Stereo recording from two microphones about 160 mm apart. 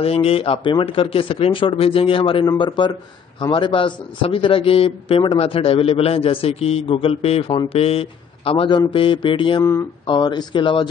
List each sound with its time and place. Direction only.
0.0 s a man's voice: 35° left (ahead or behind)
9.6 s speech: 15° left (ahead or behind)
10.0 s speech: 30° left (ahead or behind)